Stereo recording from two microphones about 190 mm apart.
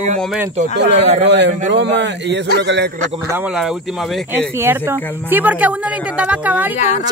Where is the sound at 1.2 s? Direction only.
65° right (ahead or behind).